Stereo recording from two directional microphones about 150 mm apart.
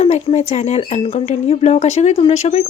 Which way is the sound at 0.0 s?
45° left (ahead or behind).